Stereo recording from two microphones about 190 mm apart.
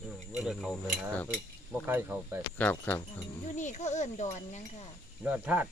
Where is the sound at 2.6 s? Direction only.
10° left (ahead or behind).